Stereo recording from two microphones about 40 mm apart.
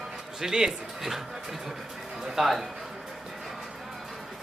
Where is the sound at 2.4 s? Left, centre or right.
Centre.